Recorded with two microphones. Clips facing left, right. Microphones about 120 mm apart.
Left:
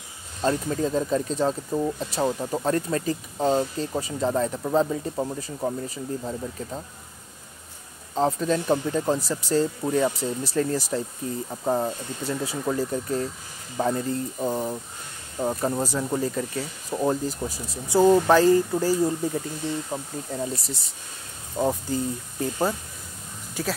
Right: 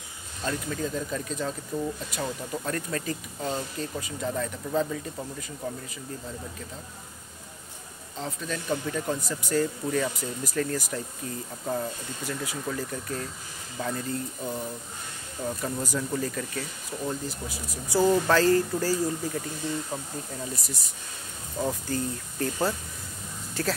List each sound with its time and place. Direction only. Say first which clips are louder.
0.4 s speech: left 6 dB; 35° left (ahead or behind)
8.1 s speech: left 11 dB; 40° left (ahead or behind)
11.6 s speech: left 6 dB; 40° left (ahead or behind)
17.0 s speech: left 8 dB; 45° left (ahead or behind)
17.6 s speech: left 5 dB; 20° left (ahead or behind)
20.3 s speech: left 6 dB; 30° left (ahead or behind)
21.8 s speech: left 3 dB; 15° left (ahead or behind)